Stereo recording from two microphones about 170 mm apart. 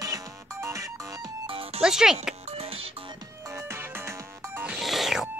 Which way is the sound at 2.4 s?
40° right (ahead or behind).